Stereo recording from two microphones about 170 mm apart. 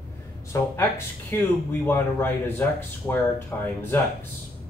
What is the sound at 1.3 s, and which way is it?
Speech, 10° left (ahead or behind).